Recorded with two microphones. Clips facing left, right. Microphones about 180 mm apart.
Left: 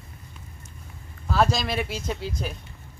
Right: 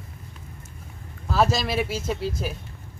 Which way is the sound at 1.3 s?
Centre (ahead or behind).